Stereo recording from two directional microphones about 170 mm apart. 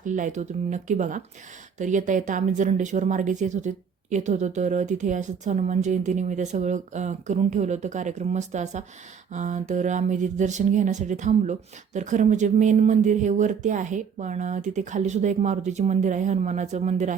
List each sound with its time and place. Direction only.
0.0 s speech: 50° right (ahead or behind)